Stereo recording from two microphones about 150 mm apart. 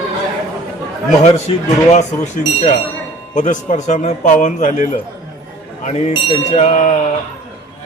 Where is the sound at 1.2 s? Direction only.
45° left (ahead or behind).